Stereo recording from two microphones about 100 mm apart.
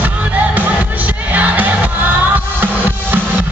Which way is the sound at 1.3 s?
15° right (ahead or behind).